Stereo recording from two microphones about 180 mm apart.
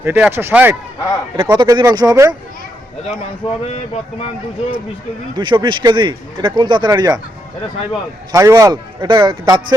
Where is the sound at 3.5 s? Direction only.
35° left (ahead or behind).